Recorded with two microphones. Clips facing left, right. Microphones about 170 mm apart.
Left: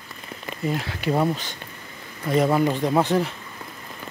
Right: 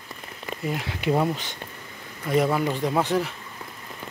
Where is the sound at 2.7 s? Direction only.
20° left (ahead or behind).